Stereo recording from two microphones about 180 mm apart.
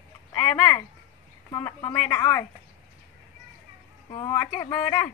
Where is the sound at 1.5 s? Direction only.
20° left (ahead or behind).